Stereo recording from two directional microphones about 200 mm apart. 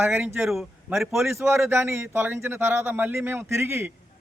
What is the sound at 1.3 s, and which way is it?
A man's voice, 15° right (ahead or behind).